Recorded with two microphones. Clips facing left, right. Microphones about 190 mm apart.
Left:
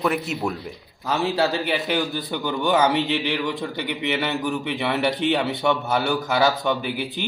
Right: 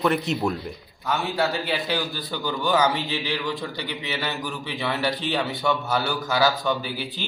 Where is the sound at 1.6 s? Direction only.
20° left (ahead or behind).